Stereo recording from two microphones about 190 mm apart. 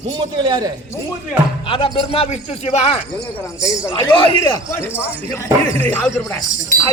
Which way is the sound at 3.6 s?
20° left (ahead or behind).